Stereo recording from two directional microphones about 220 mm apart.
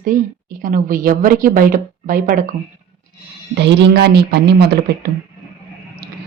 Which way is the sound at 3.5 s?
50° right (ahead or behind).